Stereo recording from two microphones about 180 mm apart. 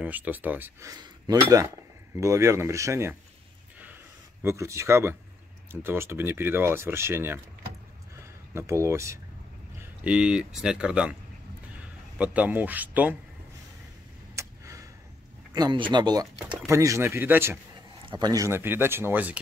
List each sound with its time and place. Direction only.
0.0 s speech: 10° right (ahead or behind)
4.4 s speech: 15° right (ahead or behind)
12.2 s speech: 10° right (ahead or behind)
14.3 s a sound: 15° right (ahead or behind)
15.5 s speech: 25° right (ahead or behind)